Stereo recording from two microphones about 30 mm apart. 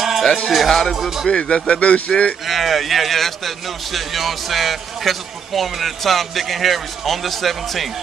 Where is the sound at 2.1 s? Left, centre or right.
Centre.